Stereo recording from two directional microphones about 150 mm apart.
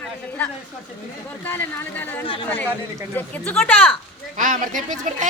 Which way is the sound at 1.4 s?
15° left (ahead or behind).